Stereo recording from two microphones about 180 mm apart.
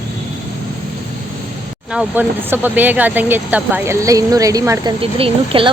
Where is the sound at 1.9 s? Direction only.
10° right (ahead or behind).